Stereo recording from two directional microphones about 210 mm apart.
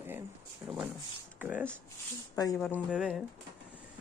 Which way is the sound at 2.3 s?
15° left (ahead or behind).